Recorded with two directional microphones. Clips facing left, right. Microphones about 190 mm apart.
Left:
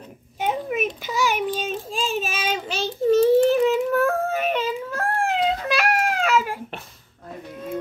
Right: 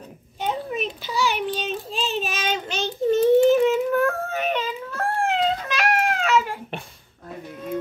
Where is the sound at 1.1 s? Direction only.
45° left (ahead or behind).